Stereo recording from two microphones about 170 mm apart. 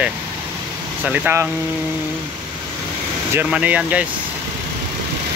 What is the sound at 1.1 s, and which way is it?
Speech, 10° right (ahead or behind).